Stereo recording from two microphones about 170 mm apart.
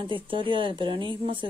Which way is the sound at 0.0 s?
30° right (ahead or behind).